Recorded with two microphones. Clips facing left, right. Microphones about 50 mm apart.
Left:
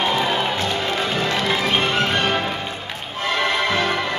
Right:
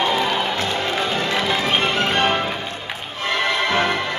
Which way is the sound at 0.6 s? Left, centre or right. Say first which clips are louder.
Even; centre.